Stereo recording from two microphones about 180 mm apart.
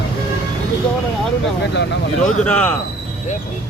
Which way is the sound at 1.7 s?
75° left (ahead or behind).